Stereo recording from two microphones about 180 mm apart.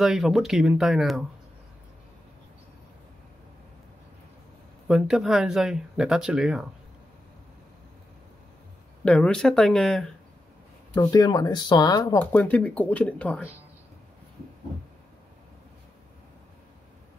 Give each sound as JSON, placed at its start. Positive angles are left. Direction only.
{"t": 0.0, "sound": "speech", "side_deg": 0}
{"t": 4.8, "sound": "speech", "side_deg": -5}
{"t": 9.0, "sound": "speech", "side_deg": 5}
{"t": 11.0, "sound": "speech", "side_deg": 20}